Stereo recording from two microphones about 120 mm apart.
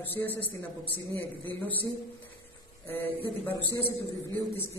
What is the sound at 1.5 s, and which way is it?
Speech, 15° left (ahead or behind).